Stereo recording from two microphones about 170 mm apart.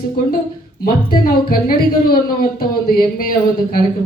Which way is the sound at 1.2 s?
60° left (ahead or behind).